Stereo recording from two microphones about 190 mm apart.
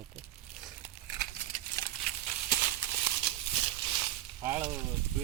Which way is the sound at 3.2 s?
30° right (ahead or behind).